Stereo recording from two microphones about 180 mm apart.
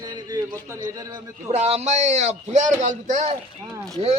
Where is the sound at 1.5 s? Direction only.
35° right (ahead or behind).